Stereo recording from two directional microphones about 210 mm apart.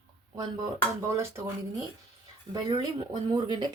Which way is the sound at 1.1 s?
15° right (ahead or behind).